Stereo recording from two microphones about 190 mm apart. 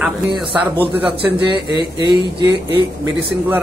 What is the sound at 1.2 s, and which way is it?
Speech, 25° right (ahead or behind).